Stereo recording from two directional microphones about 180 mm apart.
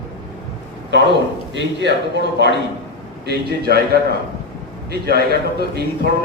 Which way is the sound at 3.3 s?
60° right (ahead or behind).